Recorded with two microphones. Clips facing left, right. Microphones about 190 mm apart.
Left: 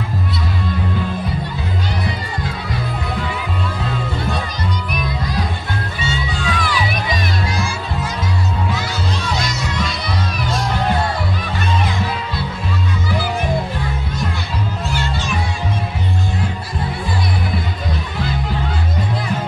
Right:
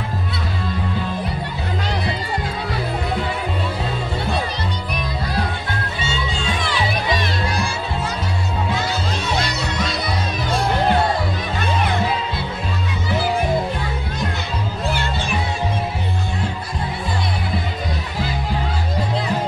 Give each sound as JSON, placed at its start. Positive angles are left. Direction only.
{"t": 6.4, "sound": "music", "side_deg": -25}